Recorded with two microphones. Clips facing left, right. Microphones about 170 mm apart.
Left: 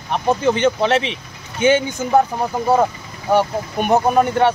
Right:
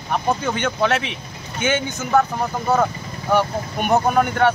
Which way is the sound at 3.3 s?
30° left (ahead or behind).